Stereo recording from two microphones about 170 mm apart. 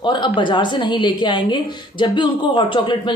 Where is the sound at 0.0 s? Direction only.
30° left (ahead or behind).